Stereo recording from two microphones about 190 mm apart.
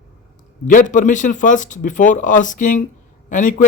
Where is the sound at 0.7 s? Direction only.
40° left (ahead or behind).